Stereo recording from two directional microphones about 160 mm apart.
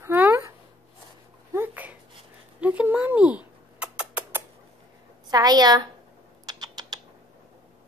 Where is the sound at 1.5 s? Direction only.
10° right (ahead or behind).